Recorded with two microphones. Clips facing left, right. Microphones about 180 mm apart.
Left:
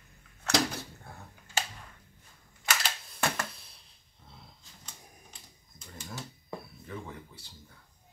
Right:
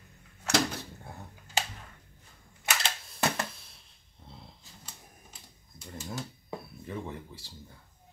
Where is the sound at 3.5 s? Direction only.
Centre (ahead or behind).